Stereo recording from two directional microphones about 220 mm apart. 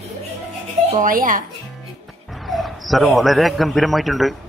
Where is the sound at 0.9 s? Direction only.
40° right (ahead or behind).